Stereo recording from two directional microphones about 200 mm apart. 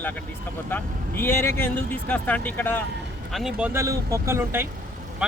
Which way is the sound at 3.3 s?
Centre (ahead or behind).